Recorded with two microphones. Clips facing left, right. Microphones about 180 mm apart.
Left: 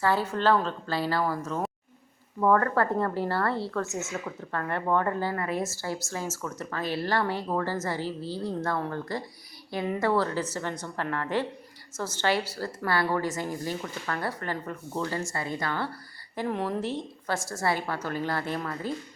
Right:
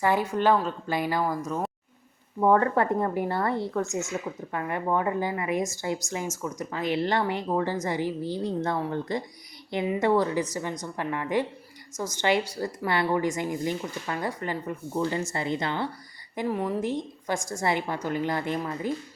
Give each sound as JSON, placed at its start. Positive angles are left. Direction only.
{"t": 0.0, "sound": "speech", "side_deg": -15}
{"t": 2.4, "sound": "speech", "side_deg": -20}
{"t": 16.5, "sound": "speech", "side_deg": -10}